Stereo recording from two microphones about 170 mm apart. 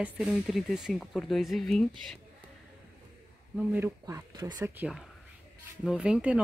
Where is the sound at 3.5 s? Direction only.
10° right (ahead or behind).